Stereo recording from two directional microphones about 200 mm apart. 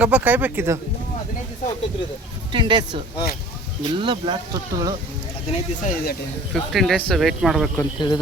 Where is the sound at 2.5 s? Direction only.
25° right (ahead or behind).